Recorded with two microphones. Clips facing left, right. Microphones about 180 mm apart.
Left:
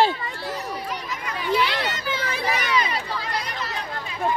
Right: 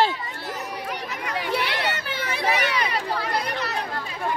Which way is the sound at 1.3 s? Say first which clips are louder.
Left 3 dB; 65° right (ahead or behind).